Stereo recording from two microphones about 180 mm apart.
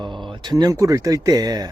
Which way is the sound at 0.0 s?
25° right (ahead or behind).